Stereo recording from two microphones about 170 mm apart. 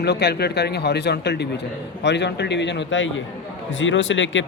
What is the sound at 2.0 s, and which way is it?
Speech, 90° left.